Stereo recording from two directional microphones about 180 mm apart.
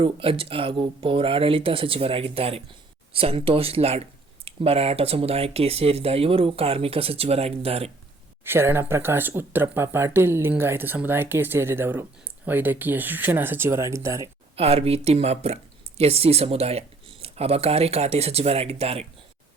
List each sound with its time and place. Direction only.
0.0 s speech: 30° right (ahead or behind)
8.4 s speech: 15° right (ahead or behind)
14.5 s speech: 35° right (ahead or behind)